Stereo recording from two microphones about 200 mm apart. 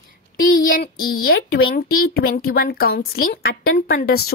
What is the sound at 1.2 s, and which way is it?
A woman's voice, 50° left (ahead or behind).